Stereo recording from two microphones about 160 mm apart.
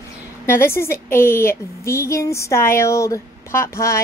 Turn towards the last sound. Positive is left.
turn(degrees=20)  # may be behind; listen again after turning